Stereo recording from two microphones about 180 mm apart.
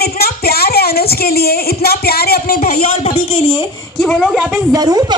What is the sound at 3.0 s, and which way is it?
Speech, 30° left (ahead or behind).